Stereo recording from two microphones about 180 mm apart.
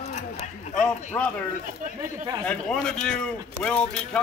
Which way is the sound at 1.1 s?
10° left (ahead or behind).